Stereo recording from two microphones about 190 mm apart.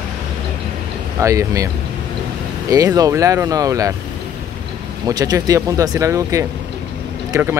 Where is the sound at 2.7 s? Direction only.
20° right (ahead or behind).